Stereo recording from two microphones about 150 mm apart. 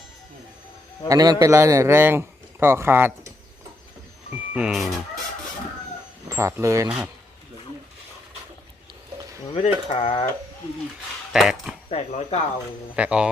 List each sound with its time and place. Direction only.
1.0 s a man's voice: 25° right (ahead or behind)
4.5 s speech: 5° right (ahead or behind)
6.2 s speech: 20° right (ahead or behind)
6.8 s a man's voice: 10° right (ahead or behind)
9.6 s speech: 40° left (ahead or behind)
11.3 s speech: centre (ahead or behind)
11.9 s speech: 45° left (ahead or behind)
13.0 s a man's voice: 5° right (ahead or behind)